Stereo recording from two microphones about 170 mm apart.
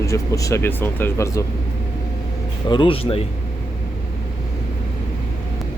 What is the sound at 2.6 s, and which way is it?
Speech, 30° left (ahead or behind).